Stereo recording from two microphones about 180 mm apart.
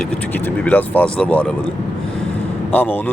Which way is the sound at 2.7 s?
10° left (ahead or behind).